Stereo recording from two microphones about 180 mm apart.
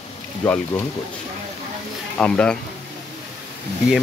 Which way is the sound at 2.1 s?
5° left (ahead or behind).